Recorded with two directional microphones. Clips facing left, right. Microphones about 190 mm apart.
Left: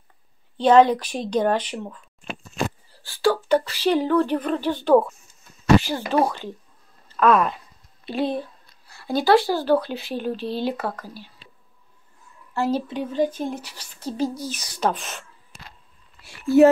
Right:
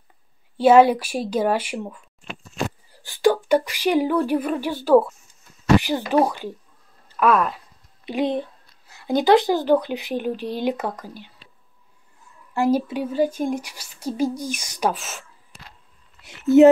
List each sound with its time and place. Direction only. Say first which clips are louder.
0.6 s a woman's voice: right 2 dB; 10° right (ahead or behind)
7.1 s a sound: left 1 dB; 10° right (ahead or behind)
7.3 s speech: left 1 dB; centre (ahead or behind)
8.0 s speech: right 2 dB; 15° right (ahead or behind)
12.5 s a woman's voice: right 3 dB; 10° right (ahead or behind)
16.2 s a sound: right 3 dB; 20° right (ahead or behind)